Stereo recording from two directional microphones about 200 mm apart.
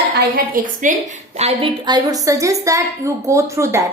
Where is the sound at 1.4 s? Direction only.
30° right (ahead or behind).